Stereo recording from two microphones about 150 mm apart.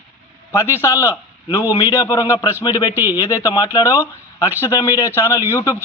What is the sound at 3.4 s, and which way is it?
Speech, 25° left (ahead or behind).